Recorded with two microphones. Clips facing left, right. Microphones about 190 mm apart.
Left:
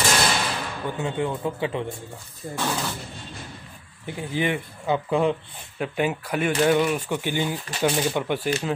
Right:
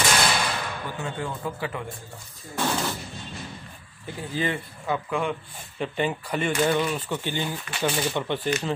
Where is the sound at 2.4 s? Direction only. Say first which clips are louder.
Left 4 dB; 55° left (ahead or behind).